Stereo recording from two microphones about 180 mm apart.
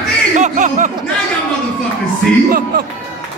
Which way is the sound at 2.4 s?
55° right (ahead or behind).